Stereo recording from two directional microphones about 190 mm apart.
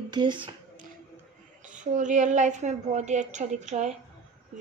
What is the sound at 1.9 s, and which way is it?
A woman's voice, 40° right (ahead or behind).